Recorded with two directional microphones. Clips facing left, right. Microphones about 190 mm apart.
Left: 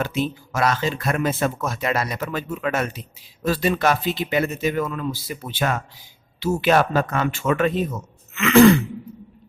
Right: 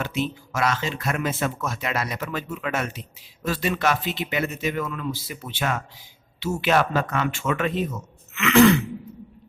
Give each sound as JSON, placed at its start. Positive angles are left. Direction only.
{"t": 0.0, "sound": "speech", "side_deg": 35}